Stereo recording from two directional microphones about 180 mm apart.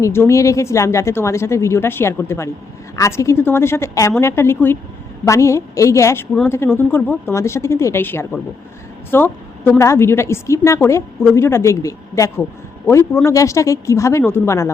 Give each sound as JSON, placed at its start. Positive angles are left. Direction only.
{"t": 0.0, "sound": "a woman's voice", "side_deg": 15}